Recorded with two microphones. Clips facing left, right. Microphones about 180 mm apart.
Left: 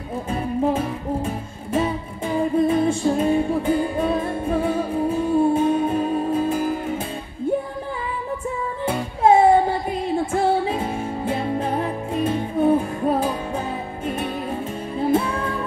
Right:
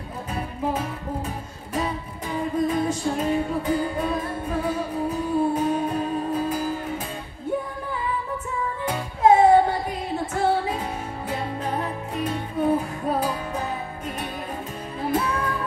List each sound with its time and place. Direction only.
0.3 s music: 25° left (ahead or behind)
8.8 s music: 30° left (ahead or behind)
10.7 s music: 25° left (ahead or behind)